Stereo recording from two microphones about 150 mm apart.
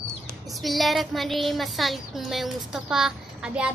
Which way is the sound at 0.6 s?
Centre (ahead or behind).